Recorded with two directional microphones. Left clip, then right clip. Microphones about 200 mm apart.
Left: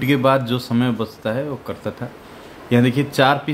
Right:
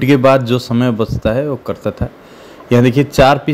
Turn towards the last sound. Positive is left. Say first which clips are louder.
# right 6 dB
turn(degrees=-30)  # may be behind; listen again after turning